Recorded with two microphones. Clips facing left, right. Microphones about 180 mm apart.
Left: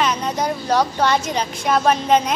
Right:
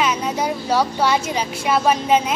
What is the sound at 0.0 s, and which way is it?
Speech, 10° right (ahead or behind).